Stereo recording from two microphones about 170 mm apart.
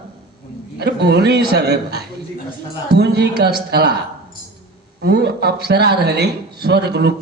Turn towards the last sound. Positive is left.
turn(degrees=-75)  # may be behind; listen again after turning